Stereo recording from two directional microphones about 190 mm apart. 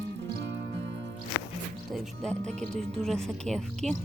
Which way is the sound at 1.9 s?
Centre (ahead or behind).